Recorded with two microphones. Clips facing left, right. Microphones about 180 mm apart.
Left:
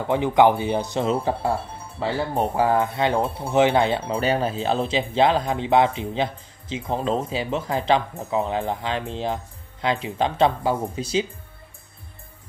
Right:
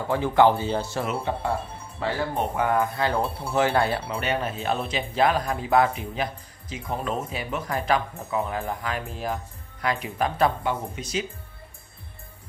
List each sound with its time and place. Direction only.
0.0 s speech: 20° left (ahead or behind)
1.0 s speech: 35° left (ahead or behind)
4.1 s speech: 35° left (ahead or behind)